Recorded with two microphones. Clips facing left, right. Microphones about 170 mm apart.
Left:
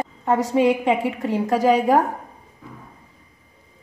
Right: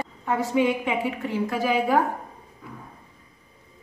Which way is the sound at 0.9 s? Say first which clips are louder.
Left 5 dB; 90° left.